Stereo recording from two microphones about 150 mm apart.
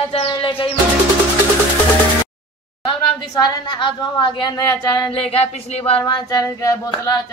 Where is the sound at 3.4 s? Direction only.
30° left (ahead or behind).